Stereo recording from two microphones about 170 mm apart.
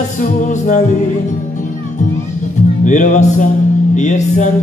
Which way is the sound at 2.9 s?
45° left (ahead or behind).